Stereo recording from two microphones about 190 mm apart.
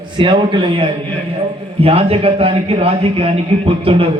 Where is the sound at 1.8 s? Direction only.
30° right (ahead or behind).